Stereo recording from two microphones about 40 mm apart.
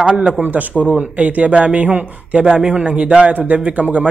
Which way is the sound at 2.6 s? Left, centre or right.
Right.